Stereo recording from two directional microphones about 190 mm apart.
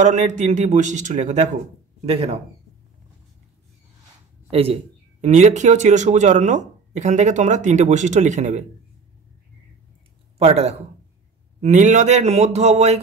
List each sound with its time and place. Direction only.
0.0 s speech: 40° right (ahead or behind)
4.5 s speech: 30° right (ahead or behind)
10.4 s speech: 35° right (ahead or behind)